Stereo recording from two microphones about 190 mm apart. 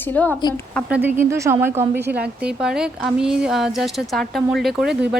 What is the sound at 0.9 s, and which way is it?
A woman's voice, 10° right (ahead or behind).